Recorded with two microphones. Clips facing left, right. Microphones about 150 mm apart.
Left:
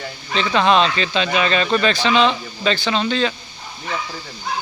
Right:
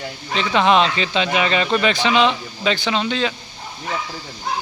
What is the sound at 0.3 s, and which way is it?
Speech, 15° right (ahead or behind).